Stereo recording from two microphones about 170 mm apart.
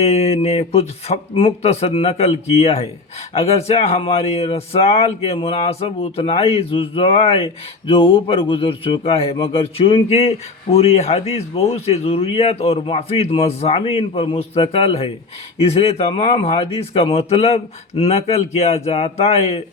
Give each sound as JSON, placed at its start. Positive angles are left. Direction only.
{"t": 0.0, "sound": "speech", "side_deg": 40}